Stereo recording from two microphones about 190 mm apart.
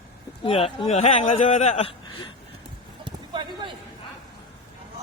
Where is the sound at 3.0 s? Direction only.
25° right (ahead or behind).